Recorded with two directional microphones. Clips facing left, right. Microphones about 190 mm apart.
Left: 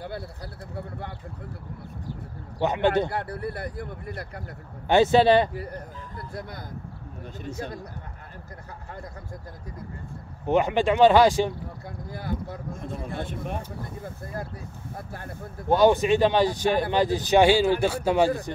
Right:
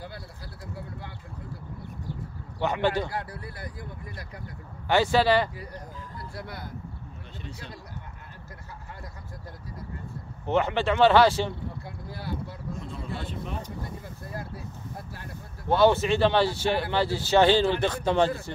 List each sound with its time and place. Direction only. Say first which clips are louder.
0.7 s a sound: left 6 dB; 55° left (ahead or behind)
2.6 s speech: left 3 dB; 20° left (ahead or behind)
3.1 s speech: left 5 dB; 60° left (ahead or behind)
4.8 s speech: left 4 dB; 20° left (ahead or behind)
7.4 s speech: left 9 dB; 45° left (ahead or behind)
10.4 s a man's voice: left 3 dB; 15° left (ahead or behind)
12.7 s speech: left 4 dB; 50° left (ahead or behind)
15.7 s a man's voice: left 2 dB; 15° left (ahead or behind)